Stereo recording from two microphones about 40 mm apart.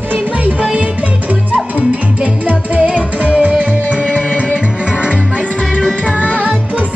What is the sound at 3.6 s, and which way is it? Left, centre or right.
Music, right.